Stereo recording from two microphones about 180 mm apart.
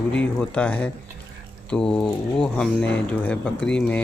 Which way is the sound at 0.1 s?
5° left (ahead or behind).